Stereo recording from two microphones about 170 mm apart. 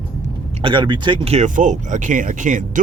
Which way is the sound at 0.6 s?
30° right (ahead or behind).